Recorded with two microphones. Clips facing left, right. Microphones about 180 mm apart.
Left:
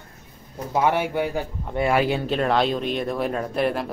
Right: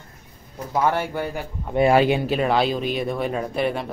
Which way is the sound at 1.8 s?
30° right (ahead or behind).